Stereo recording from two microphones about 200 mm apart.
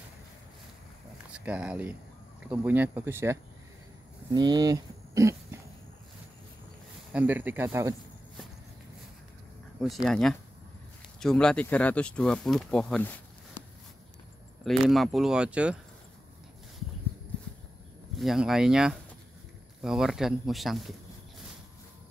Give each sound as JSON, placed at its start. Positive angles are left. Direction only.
{"t": 1.3, "sound": "speech", "side_deg": -5}
{"t": 7.1, "sound": "speech", "side_deg": -10}
{"t": 10.0, "sound": "speech", "side_deg": 0}
{"t": 14.9, "sound": "speech", "side_deg": 0}
{"t": 18.1, "sound": "speech", "side_deg": 0}